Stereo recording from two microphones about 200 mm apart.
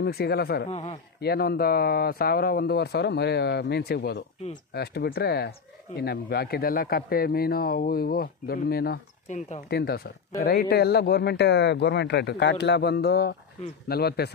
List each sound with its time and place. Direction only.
0.0 s a man's voice: 50° left (ahead or behind)
0.7 s a man's voice: 30° left (ahead or behind)
1.2 s a man's voice: 50° left (ahead or behind)